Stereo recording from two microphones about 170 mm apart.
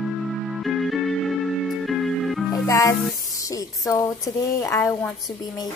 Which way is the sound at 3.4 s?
20° left (ahead or behind).